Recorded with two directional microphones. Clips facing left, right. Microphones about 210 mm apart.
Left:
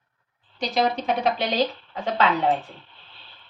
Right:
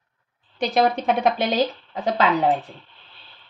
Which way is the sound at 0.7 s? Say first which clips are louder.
Right 3 dB; 55° right (ahead or behind).